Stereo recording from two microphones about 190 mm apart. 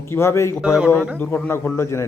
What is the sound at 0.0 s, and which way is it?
Speech, 15° left (ahead or behind).